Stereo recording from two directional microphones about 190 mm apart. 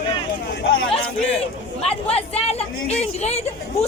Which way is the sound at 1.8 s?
30° left (ahead or behind).